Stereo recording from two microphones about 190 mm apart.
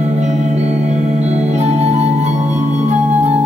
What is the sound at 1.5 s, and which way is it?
Music, 35° right (ahead or behind).